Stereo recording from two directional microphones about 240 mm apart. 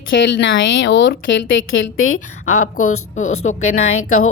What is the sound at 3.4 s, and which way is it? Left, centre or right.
Speech, left.